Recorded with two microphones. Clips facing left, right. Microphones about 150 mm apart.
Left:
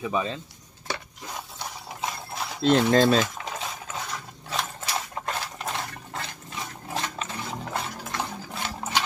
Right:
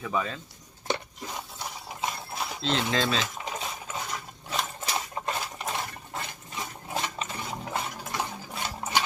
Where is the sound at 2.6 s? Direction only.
50° left (ahead or behind).